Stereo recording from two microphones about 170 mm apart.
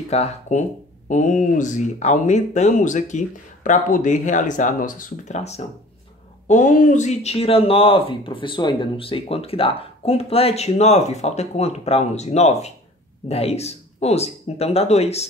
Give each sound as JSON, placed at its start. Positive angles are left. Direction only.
{"t": 0.1, "sound": "speech", "side_deg": 40}